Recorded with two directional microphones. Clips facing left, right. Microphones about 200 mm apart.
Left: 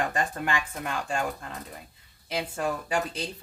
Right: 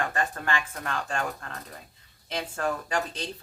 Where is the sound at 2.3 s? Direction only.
5° left (ahead or behind).